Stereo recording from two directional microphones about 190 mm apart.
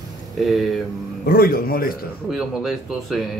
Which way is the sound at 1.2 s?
55° left (ahead or behind).